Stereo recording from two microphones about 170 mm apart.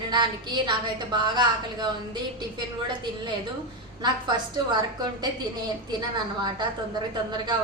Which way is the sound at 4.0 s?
25° right (ahead or behind).